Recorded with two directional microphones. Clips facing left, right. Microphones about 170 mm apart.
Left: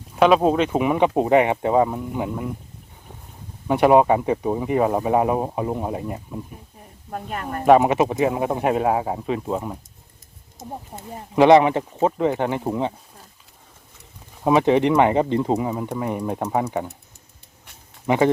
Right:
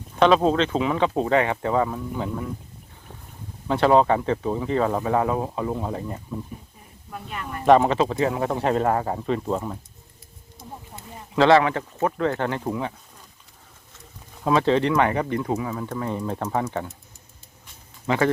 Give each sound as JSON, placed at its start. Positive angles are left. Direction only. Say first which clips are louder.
{"t": 0.2, "sound": "speech", "louder": "left 2 dB", "side_deg": 10}
{"t": 3.7, "sound": "speech", "louder": "left 3 dB", "side_deg": 15}
{"t": 7.1, "sound": "a woman's voice", "louder": "left 5 dB", "side_deg": 45}
{"t": 7.6, "sound": "speech", "louder": "left 2 dB", "side_deg": 10}
{"t": 10.6, "sound": "speech", "louder": "left 5 dB", "side_deg": 45}
{"t": 11.3, "sound": "speech", "louder": "left 4 dB", "side_deg": 20}
{"t": 14.4, "sound": "speech", "louder": "left 3 dB", "side_deg": 15}
{"t": 18.0, "sound": "speech", "louder": "left 4 dB", "side_deg": 15}